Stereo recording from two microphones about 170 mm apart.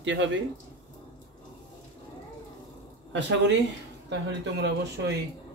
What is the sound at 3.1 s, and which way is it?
Speech, 90° right.